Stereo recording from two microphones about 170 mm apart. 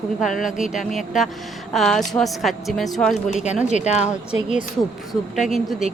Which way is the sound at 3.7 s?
40° left (ahead or behind).